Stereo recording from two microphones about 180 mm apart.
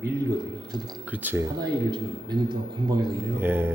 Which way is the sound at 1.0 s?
10° right (ahead or behind).